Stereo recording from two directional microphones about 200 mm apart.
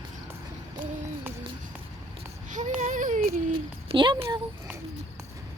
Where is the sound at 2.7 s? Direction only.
40° right (ahead or behind).